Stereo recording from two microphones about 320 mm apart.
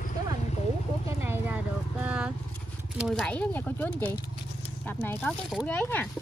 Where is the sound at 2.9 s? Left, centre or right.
Centre.